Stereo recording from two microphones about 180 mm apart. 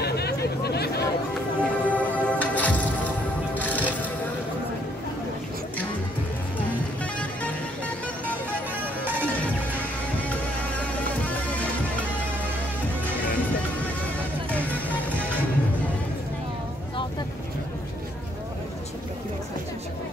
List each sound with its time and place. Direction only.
0.0 s a sound: 65° left (ahead or behind)
1.6 s music: 10° left (ahead or behind)
11.0 s music: 10° left (ahead or behind)